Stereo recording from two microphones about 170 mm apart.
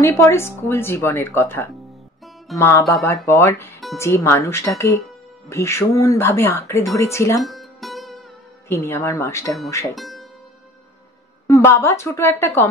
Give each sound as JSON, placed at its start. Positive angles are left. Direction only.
{"t": 0.0, "sound": "a woman's voice", "side_deg": 15}
{"t": 7.3, "sound": "music", "side_deg": 0}
{"t": 8.6, "sound": "a woman's voice", "side_deg": 15}
{"t": 9.9, "sound": "music", "side_deg": 0}
{"t": 11.4, "sound": "a woman's voice", "side_deg": 15}